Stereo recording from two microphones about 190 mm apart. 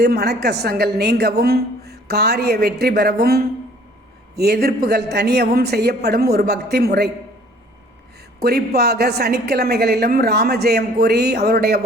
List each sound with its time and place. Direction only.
0.0 s a woman's voice: 55° right (ahead or behind)
8.4 s a woman's voice: 55° right (ahead or behind)